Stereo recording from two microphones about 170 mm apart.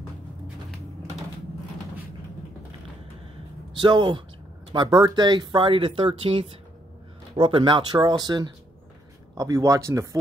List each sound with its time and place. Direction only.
3.7 s speech: 25° right (ahead or behind)